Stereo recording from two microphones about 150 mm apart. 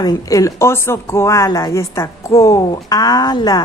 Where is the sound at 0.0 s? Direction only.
25° left (ahead or behind).